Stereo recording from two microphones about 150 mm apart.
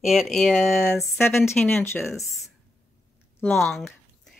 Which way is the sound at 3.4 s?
5° left (ahead or behind).